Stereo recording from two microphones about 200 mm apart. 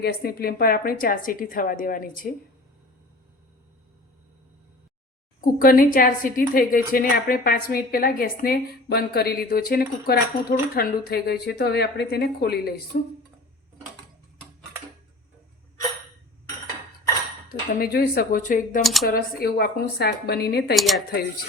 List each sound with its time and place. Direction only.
0.0 s a woman's voice: 50° left (ahead or behind)
5.5 s a woman's voice: 45° left (ahead or behind)
17.5 s a woman's voice: 50° left (ahead or behind)
18.8 s speech: centre (ahead or behind)
19.0 s a woman's voice: 50° left (ahead or behind)
20.7 s speech: centre (ahead or behind)